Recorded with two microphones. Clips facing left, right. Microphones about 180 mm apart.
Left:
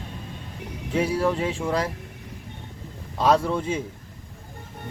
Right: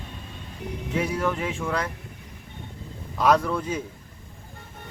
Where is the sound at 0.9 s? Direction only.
30° left (ahead or behind).